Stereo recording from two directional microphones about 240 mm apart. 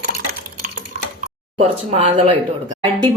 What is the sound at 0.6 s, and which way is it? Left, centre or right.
Stir, right.